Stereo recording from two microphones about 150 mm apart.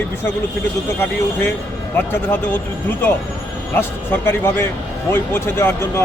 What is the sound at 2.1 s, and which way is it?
Speech, 15° left (ahead or behind).